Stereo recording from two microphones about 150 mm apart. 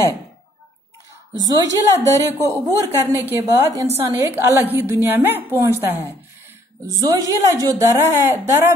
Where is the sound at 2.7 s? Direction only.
20° right (ahead or behind).